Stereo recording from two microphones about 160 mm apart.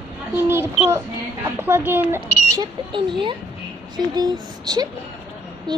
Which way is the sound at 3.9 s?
25° right (ahead or behind).